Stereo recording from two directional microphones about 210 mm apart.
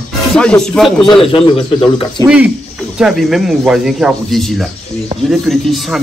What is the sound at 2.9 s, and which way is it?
A man's voice, centre (ahead or behind).